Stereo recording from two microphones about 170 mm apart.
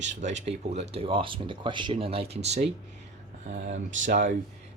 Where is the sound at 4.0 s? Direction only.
45° right (ahead or behind).